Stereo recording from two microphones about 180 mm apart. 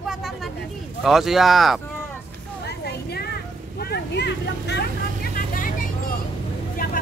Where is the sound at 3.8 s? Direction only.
65° left (ahead or behind); by 7.0 s 50° left (ahead or behind).